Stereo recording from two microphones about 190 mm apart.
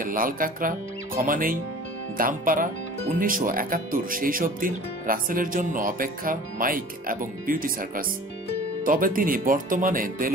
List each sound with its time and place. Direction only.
0.0 s speech: 45° right (ahead or behind)